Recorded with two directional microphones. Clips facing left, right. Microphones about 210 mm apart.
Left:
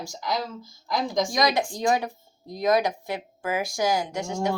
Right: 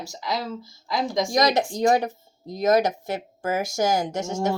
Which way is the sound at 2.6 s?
45° right (ahead or behind).